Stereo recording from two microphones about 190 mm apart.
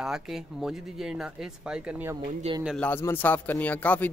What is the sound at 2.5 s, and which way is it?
Speech, 35° right (ahead or behind).